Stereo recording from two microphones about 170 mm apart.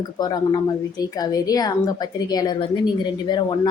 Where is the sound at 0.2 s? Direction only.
25° left (ahead or behind).